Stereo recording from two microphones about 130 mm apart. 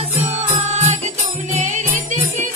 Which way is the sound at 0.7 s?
65° right (ahead or behind).